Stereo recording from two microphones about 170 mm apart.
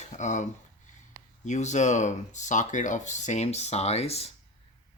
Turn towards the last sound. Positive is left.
turn(degrees=35)  # may be behind; listen again after turning